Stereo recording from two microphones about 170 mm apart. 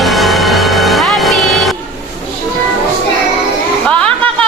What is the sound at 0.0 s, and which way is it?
Music, centre (ahead or behind).